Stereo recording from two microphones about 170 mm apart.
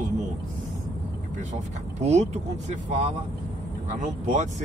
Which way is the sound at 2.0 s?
40° right (ahead or behind).